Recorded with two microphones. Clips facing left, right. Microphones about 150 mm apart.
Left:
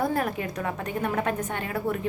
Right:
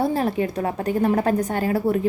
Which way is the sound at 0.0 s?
30° right (ahead or behind).